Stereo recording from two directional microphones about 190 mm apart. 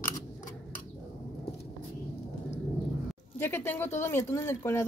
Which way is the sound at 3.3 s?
10° left (ahead or behind).